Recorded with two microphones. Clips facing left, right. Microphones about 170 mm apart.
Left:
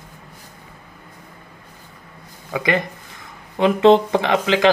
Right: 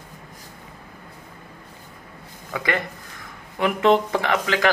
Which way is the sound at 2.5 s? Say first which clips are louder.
Left 5 dB; 20° left (ahead or behind).